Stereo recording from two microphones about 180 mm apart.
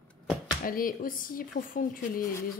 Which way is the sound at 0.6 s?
50° left (ahead or behind).